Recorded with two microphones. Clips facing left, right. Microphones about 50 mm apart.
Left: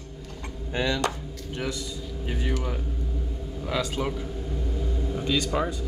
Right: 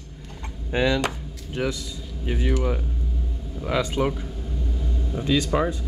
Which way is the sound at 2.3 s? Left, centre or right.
Centre.